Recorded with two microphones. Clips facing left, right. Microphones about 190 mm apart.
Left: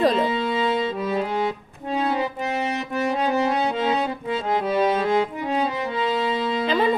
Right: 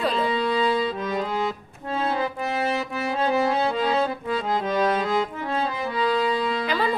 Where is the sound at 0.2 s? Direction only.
20° left (ahead or behind).